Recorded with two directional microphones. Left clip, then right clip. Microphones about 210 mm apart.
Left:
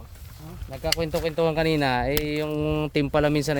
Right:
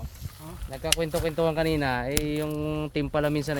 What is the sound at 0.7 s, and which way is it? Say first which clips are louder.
Speech: left 1 dB; 20° left (ahead or behind).